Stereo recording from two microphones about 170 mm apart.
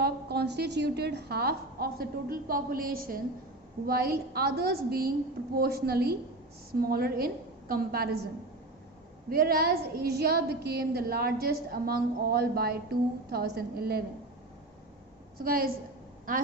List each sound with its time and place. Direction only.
0.0 s a woman's voice: 70° right (ahead or behind)
9.3 s a woman's voice: 60° right (ahead or behind)
15.4 s a woman's voice: 60° right (ahead or behind)